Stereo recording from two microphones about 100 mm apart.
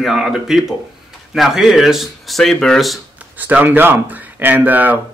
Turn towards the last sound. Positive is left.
turn(degrees=-15)  # may be behind; listen again after turning